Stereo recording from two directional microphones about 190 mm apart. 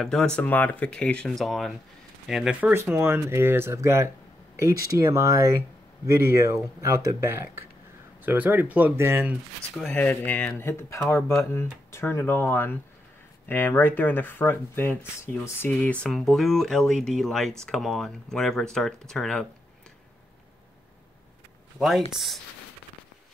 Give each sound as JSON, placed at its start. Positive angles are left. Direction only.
{"t": 0.0, "sound": "speech", "side_deg": 5}
{"t": 9.8, "sound": "speech", "side_deg": 5}
{"t": 21.7, "sound": "speech", "side_deg": 0}